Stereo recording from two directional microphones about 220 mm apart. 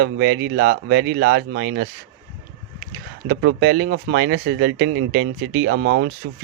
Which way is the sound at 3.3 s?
50° right (ahead or behind).